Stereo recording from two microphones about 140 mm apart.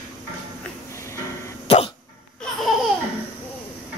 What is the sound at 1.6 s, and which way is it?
Dog, 45° left (ahead or behind).